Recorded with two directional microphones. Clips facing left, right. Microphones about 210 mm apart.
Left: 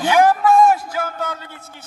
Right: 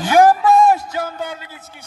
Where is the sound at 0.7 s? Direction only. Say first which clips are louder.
Right 1 dB; 20° right (ahead or behind).